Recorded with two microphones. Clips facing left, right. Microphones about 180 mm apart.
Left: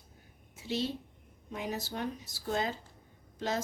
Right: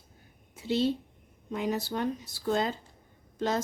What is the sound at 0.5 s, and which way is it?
Speech, 60° right (ahead or behind).